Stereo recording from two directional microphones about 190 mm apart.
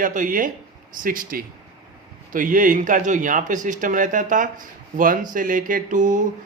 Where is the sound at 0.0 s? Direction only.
45° right (ahead or behind).